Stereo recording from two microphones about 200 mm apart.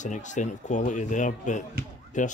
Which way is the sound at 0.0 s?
40° left (ahead or behind).